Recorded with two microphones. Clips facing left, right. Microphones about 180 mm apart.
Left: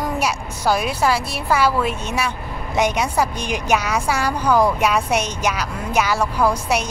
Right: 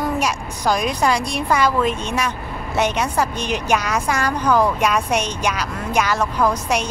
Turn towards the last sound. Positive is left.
turn(degrees=10)  # may be behind; listen again after turning